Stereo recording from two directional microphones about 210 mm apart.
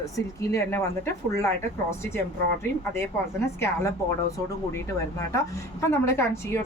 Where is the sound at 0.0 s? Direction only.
15° left (ahead or behind).